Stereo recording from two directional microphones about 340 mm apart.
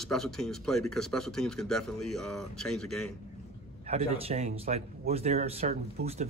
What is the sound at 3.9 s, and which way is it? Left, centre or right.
Speech, centre.